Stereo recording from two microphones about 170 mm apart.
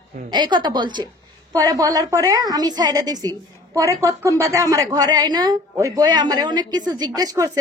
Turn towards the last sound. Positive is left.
turn(degrees=-20)  # may be behind; listen again after turning